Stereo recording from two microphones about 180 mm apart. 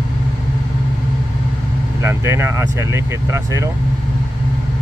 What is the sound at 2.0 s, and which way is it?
Speech, 15° right (ahead or behind).